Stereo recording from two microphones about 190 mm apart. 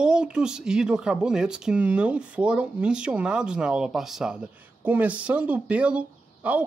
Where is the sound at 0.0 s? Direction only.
5° right (ahead or behind).